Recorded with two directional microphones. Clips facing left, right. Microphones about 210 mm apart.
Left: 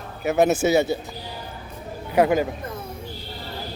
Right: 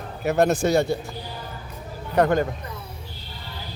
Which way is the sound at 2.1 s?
5° left (ahead or behind).